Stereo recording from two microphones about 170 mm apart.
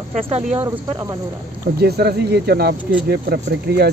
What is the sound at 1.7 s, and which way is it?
Speech, 70° right (ahead or behind).